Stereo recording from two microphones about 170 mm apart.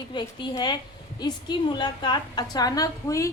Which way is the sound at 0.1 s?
25° left (ahead or behind).